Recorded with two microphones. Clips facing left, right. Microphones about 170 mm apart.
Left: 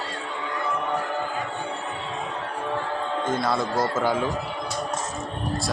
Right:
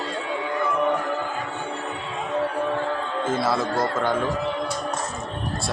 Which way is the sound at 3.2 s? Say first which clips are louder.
Right 3 dB; 5° right (ahead or behind).